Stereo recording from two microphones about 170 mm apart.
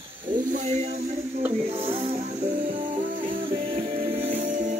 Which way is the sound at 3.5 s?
35° right (ahead or behind).